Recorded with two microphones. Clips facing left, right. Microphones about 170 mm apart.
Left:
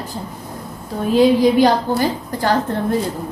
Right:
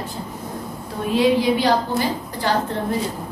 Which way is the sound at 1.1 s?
45° left (ahead or behind).